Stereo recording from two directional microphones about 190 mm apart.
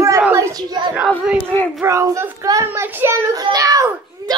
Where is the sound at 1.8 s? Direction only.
15° right (ahead or behind).